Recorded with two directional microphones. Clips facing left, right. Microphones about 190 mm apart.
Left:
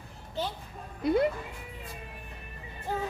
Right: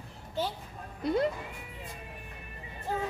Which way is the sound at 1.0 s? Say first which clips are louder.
Left 3 dB; 10° left (ahead or behind).